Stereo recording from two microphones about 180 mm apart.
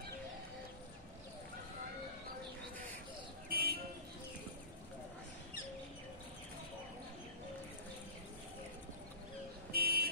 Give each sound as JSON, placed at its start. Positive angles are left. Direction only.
{"t": 3.4, "sound": "vehicle", "side_deg": -55}
{"t": 9.7, "sound": "vehicle", "side_deg": -55}